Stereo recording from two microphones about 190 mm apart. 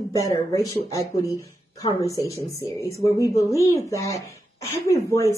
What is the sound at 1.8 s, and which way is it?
A woman's voice, 15° left (ahead or behind).